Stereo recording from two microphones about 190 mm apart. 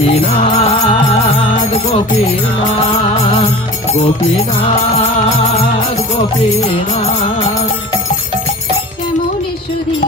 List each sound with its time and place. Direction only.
0.1 s music: 30° left (ahead or behind)
3.0 s music: 35° left (ahead or behind)